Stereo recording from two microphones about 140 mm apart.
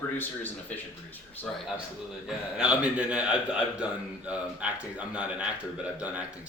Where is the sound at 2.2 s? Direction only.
5° right (ahead or behind).